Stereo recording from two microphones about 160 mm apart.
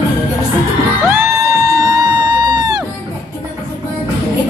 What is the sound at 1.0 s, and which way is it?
Crowd, 15° right (ahead or behind).